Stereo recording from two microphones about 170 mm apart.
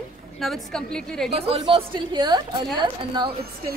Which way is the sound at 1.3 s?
35° right (ahead or behind).